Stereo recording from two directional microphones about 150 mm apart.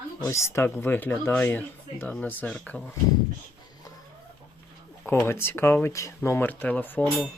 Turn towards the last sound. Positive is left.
turn(degrees=10)  # may be behind; listen again after turning